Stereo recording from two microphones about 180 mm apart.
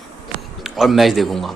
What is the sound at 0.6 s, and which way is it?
Speech, centre (ahead or behind).